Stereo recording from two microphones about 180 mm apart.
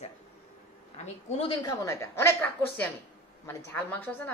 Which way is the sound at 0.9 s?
35° left (ahead or behind).